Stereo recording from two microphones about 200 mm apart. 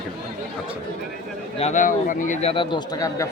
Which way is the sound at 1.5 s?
35° left (ahead or behind).